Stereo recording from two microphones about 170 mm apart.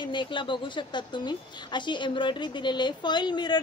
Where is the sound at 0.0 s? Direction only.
30° left (ahead or behind).